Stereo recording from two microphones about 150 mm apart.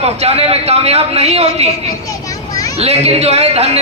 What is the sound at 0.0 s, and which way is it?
A man's voice, 45° right (ahead or behind).